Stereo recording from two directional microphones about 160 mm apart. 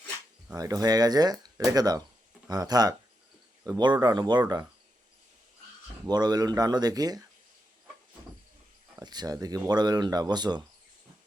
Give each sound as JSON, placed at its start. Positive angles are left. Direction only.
{"t": 0.5, "sound": "speech", "side_deg": -25}
{"t": 6.1, "sound": "speech", "side_deg": -25}
{"t": 9.0, "sound": "speech", "side_deg": -25}